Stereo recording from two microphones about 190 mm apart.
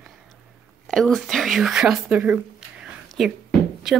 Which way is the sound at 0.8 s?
Centre (ahead or behind).